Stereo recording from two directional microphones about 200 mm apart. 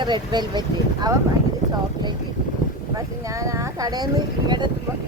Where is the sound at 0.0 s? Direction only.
20° right (ahead or behind).